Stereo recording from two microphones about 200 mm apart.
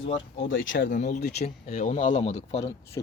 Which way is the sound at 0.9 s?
40° left (ahead or behind).